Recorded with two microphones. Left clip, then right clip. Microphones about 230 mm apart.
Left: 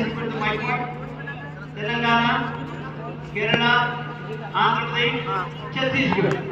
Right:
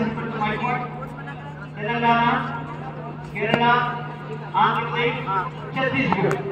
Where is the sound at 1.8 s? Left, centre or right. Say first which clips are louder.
Right 1 dB; left.